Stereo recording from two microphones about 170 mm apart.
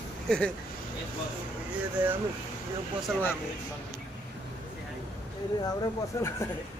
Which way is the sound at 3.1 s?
5° right (ahead or behind).